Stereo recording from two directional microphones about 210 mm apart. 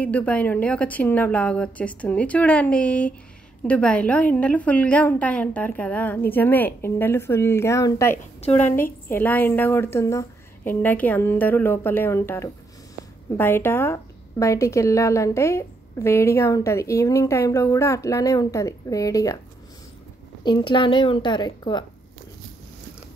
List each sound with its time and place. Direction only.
0.0 s a woman's voice: 5° left (ahead or behind)
20.4 s a woman's voice: 25° left (ahead or behind)